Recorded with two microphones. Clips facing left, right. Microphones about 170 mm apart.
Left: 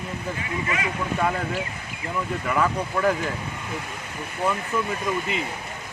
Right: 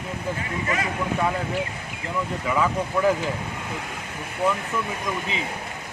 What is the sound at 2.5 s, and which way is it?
Speech, 5° right (ahead or behind).